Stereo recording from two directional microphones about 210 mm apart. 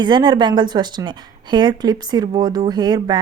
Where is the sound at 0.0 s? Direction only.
20° right (ahead or behind).